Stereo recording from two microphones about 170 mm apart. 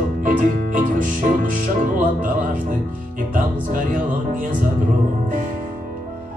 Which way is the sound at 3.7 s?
55° right (ahead or behind).